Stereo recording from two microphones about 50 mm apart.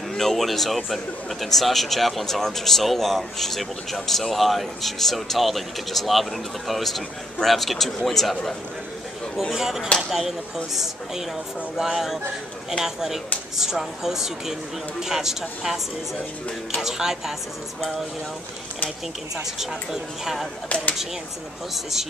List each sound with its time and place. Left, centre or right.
0.1 s a man's voice: centre
9.5 s a man's voice: centre
16.8 s speech: centre
19.6 s speech: centre
20.6 s speech: left